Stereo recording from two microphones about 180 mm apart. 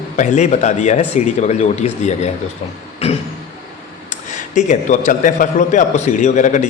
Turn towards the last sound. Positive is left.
turn(degrees=45)  # may be behind; listen again after turning